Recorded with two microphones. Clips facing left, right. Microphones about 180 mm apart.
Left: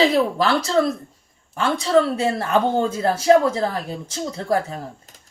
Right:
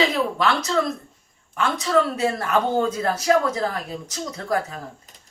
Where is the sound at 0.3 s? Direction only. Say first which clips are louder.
Left 3 dB; 35° left (ahead or behind).